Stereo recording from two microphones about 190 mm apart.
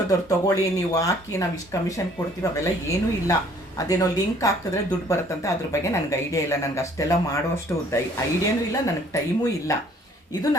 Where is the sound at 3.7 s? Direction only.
20° left (ahead or behind).